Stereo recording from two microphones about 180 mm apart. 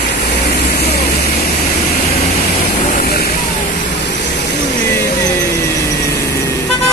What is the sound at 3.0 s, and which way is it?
Vehicle, 60° left (ahead or behind).